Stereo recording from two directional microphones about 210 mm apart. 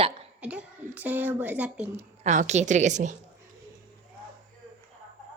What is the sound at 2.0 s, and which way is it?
A woman's voice, 35° right (ahead or behind).